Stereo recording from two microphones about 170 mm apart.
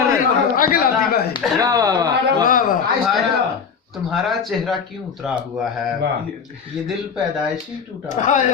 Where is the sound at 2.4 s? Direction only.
55° left (ahead or behind).